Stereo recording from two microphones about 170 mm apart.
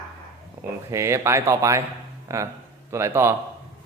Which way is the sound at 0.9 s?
15° right (ahead or behind).